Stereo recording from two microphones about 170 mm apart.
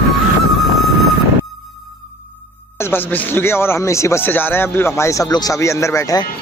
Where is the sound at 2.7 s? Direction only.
15° left (ahead or behind).